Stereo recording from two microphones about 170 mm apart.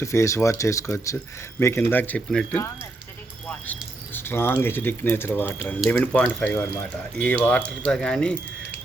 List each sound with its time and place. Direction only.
0.0 s speech: 15° left (ahead or behind)